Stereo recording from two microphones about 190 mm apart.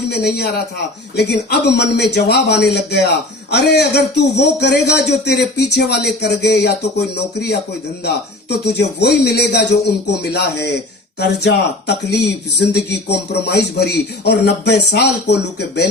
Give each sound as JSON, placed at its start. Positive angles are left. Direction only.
{"t": 0.1, "sound": "speech", "side_deg": 60}
{"t": 8.0, "sound": "speech", "side_deg": 60}
{"t": 11.2, "sound": "speech", "side_deg": 60}